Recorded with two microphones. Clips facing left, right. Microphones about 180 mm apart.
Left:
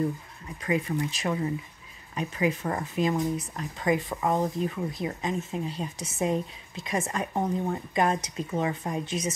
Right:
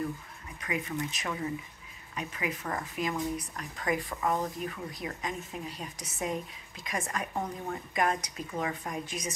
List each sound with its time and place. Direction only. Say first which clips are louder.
0.6 s speech: left 6 dB; 30° left (ahead or behind)